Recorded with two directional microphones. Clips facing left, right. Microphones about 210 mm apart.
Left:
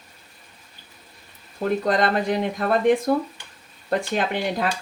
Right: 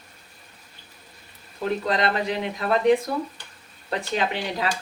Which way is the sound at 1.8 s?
45° left (ahead or behind).